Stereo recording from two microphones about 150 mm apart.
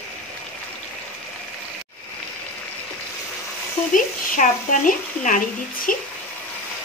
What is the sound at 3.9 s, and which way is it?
A woman's voice, 60° left (ahead or behind).